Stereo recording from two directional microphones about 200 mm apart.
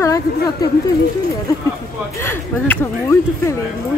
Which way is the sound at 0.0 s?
15° left (ahead or behind).